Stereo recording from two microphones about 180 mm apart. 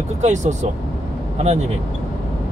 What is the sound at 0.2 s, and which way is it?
Speech, 40° right (ahead or behind).